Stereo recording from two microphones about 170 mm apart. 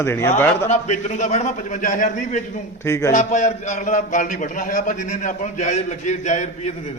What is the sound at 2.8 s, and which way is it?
Speech, 15° left (ahead or behind).